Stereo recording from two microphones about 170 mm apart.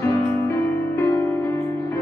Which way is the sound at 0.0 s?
15° left (ahead or behind).